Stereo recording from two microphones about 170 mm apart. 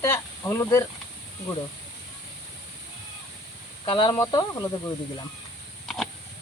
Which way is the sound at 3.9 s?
30° left (ahead or behind).